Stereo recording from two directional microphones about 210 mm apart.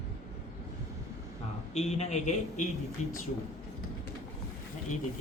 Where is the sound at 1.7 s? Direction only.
30° left (ahead or behind).